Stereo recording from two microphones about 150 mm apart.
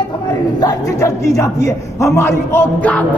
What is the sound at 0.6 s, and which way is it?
A man's voice, 20° left (ahead or behind).